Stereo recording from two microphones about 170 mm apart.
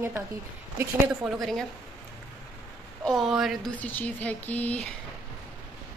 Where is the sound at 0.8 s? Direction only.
Centre (ahead or behind).